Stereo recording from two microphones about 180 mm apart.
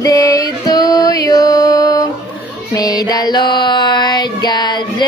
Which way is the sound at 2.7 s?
20° left (ahead or behind).